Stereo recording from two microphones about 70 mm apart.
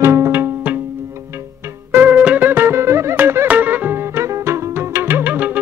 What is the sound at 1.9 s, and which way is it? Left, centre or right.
Music, right.